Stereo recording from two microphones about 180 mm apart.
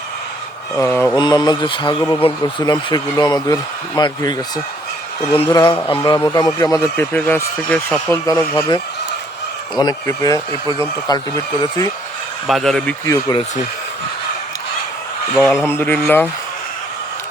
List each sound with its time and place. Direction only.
0.8 s speech: 10° left (ahead or behind)
1.2 s speech: 25° left (ahead or behind)
12.5 s speech: centre (ahead or behind)
13.1 s speech: 20° left (ahead or behind)
15.4 s speech: 10° left (ahead or behind)